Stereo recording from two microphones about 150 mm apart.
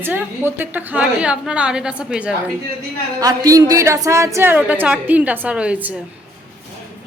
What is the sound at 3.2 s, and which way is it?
A woman's voice, 25° right (ahead or behind).